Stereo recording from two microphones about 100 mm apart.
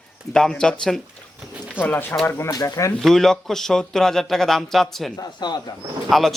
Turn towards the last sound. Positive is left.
turn(degrees=0)  # may be behind; listen again after turning